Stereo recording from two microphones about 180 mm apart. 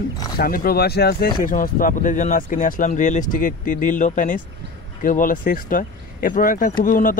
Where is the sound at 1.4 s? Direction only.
50° left (ahead or behind).